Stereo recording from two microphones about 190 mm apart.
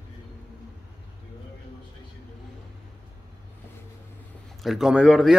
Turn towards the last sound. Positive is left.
turn(degrees=0)  # may be behind; listen again after turning